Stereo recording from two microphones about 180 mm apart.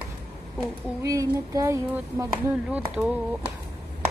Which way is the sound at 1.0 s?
20° right (ahead or behind).